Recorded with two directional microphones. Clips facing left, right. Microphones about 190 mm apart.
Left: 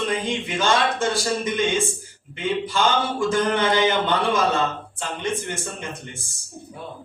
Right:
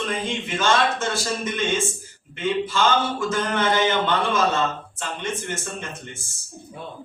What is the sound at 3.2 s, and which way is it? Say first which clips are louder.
Speech: left 3 dB; 15° left (ahead or behind).